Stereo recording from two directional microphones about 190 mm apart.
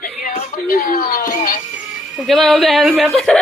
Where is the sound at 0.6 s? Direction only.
55° left (ahead or behind).